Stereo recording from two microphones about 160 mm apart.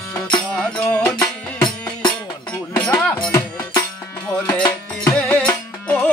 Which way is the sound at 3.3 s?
20° left (ahead or behind).